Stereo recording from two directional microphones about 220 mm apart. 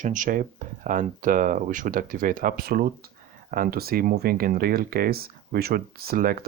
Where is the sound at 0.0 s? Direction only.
35° right (ahead or behind).